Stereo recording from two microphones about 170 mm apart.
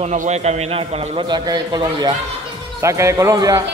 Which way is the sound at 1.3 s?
25° right (ahead or behind).